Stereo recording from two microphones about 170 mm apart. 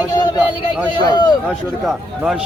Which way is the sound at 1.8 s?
5° right (ahead or behind).